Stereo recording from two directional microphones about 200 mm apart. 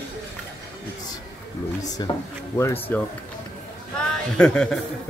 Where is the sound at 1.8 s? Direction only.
20° left (ahead or behind).